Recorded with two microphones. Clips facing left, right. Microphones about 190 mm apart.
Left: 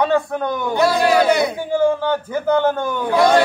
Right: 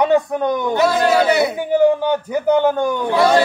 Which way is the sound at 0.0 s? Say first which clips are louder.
Right 3 dB; 20° right (ahead or behind).